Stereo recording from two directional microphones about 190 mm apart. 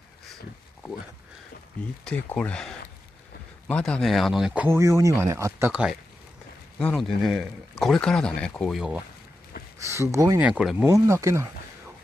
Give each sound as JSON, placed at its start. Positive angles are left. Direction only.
{"t": 2.0, "sound": "speech", "side_deg": 5}
{"t": 9.9, "sound": "speech", "side_deg": -15}
{"t": 10.4, "sound": "speech", "side_deg": -5}
{"t": 10.9, "sound": "speech", "side_deg": -15}